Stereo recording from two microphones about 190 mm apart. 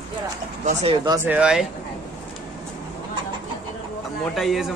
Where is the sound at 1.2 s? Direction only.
5° right (ahead or behind).